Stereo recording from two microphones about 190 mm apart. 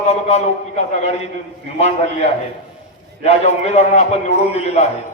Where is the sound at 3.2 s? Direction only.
35° left (ahead or behind).